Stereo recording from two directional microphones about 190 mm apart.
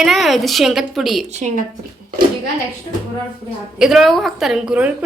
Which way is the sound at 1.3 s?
35° right (ahead or behind).